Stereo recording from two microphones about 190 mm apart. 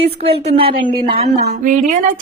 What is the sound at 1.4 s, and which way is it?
Speech, 45° right (ahead or behind).